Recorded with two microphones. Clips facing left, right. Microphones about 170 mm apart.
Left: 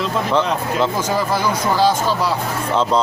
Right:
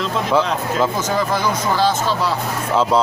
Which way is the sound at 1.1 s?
10° left (ahead or behind).